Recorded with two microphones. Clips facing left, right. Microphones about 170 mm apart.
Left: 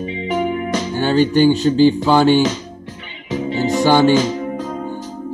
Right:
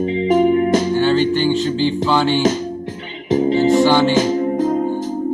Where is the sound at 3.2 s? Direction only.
45° right (ahead or behind).